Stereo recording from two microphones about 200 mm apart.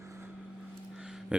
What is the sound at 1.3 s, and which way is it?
Speech, 5° right (ahead or behind).